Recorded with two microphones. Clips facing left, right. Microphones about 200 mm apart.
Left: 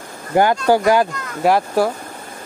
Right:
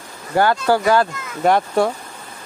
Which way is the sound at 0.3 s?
20° left (ahead or behind).